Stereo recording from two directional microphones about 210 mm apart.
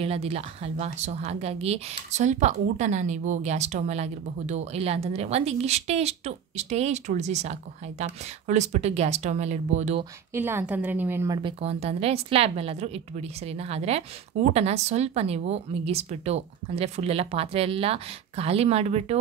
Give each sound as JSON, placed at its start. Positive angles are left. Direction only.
{"t": 0.0, "sound": "speech", "side_deg": -30}
{"t": 10.3, "sound": "a woman's voice", "side_deg": -10}